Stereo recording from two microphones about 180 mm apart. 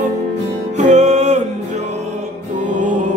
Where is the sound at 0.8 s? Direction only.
40° right (ahead or behind).